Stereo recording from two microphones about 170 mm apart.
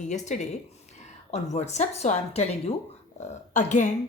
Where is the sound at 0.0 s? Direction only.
45° left (ahead or behind).